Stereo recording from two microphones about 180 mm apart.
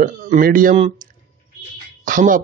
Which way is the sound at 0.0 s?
50° right (ahead or behind).